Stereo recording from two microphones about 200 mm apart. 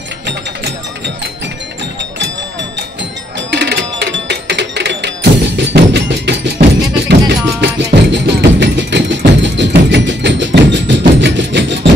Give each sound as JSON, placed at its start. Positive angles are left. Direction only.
{"t": 3.5, "sound": "music", "side_deg": -55}